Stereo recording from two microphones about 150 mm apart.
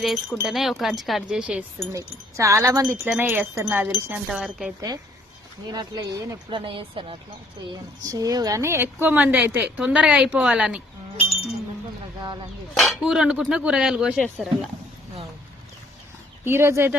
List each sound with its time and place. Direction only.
0.0 s speech: centre (ahead or behind)
1.9 s speech: 20° right (ahead or behind)
3.0 s speech: 5° right (ahead or behind)
3.2 s a woman's voice: 15° right (ahead or behind)
5.7 s speech: 25° right (ahead or behind)
6.7 s speech: 35° right (ahead or behind)
7.7 s a woman's voice: 25° right (ahead or behind); by 10.8 s 5° right (ahead or behind)
12.7 s speech: centre (ahead or behind)
16.4 s a woman's voice: 15° right (ahead or behind)